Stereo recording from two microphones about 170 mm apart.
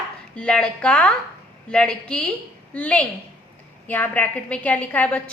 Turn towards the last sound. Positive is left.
turn(degrees=10)  # may be behind; listen again after turning